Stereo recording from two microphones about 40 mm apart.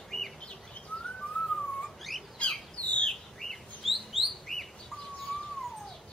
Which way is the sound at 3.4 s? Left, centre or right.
Centre.